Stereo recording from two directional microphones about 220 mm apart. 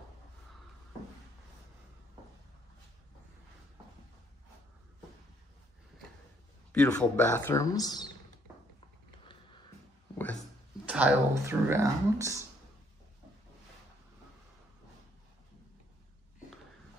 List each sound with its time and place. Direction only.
6.7 s speech: 5° left (ahead or behind)
9.3 s a sound: 20° left (ahead or behind)
10.9 s speech: 5° right (ahead or behind)